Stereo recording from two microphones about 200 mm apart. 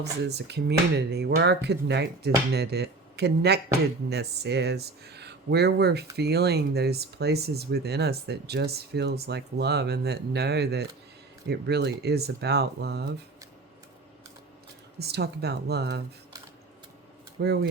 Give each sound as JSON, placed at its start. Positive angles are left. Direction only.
{"t": 0.0, "sound": "speech", "side_deg": -55}
{"t": 14.9, "sound": "speech", "side_deg": -55}
{"t": 17.4, "sound": "speech", "side_deg": -55}